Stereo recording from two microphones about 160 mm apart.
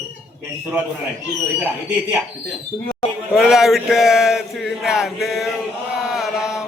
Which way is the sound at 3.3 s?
5° right (ahead or behind).